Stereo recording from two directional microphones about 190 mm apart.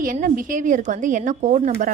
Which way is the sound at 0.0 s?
45° right (ahead or behind).